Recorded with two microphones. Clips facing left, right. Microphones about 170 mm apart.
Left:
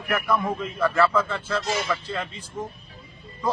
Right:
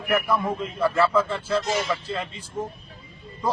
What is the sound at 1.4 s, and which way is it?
Speech, 30° right (ahead or behind).